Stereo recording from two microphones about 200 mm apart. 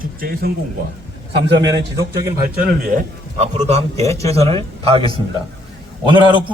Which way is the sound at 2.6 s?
50° right (ahead or behind).